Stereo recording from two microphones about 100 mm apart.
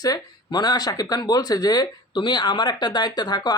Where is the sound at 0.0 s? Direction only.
40° left (ahead or behind).